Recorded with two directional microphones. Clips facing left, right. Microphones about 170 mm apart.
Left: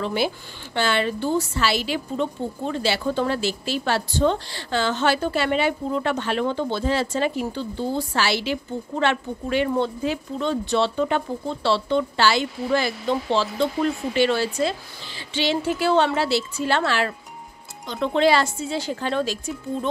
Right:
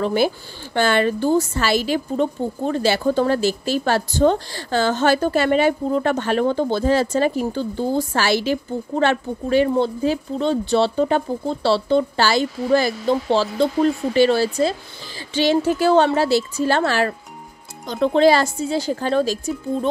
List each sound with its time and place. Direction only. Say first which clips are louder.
0.0 s a woman's voice: right 5 dB; 45° right (ahead or behind)